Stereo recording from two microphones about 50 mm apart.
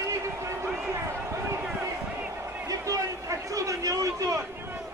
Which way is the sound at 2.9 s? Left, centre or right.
Right.